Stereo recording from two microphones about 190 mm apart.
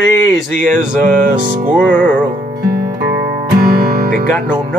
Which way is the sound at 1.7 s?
5° left (ahead or behind).